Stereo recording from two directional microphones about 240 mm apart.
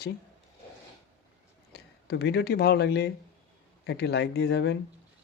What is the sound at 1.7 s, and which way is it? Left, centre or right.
Speech, left.